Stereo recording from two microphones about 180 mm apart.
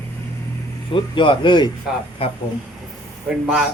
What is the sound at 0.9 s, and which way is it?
A man's voice, 25° left (ahead or behind).